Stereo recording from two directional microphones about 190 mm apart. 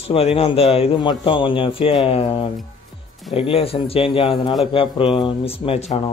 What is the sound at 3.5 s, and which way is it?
A man's voice, 30° left (ahead or behind).